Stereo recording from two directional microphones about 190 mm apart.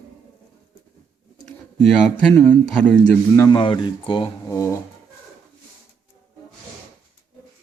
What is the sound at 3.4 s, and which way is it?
Speech, 25° left (ahead or behind).